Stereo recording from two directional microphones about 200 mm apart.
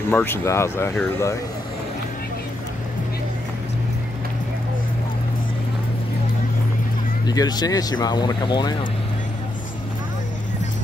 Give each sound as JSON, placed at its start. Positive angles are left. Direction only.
{"t": 0.1, "sound": "speech", "side_deg": 10}
{"t": 7.2, "sound": "speech", "side_deg": 20}